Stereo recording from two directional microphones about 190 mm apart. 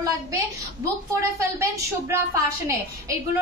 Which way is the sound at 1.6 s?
15° right (ahead or behind).